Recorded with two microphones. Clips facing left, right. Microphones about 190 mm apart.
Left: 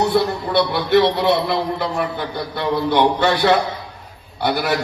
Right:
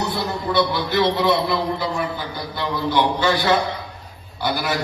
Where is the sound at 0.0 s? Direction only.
65° left (ahead or behind).